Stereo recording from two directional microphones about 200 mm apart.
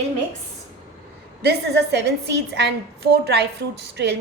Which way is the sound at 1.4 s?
55° right (ahead or behind).